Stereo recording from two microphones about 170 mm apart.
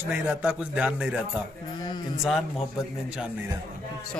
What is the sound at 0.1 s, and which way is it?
Speech, 10° right (ahead or behind).